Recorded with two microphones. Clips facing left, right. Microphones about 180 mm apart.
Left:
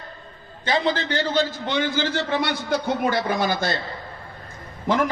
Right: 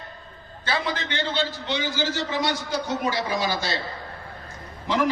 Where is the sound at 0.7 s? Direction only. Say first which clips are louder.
Left 5 dB; 30° left (ahead or behind); by 3.8 s 55° left (ahead or behind).